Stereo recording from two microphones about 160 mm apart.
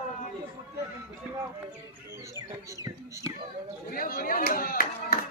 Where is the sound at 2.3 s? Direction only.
20° right (ahead or behind).